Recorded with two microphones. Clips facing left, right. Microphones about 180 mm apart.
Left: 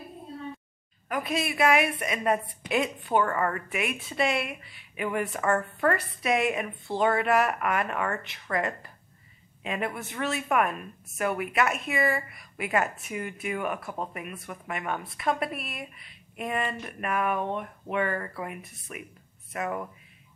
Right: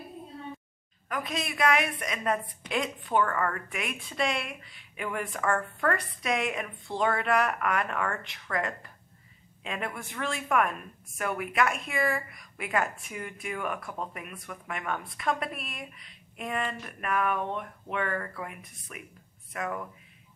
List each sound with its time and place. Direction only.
1.0 s a woman's voice: 10° left (ahead or behind)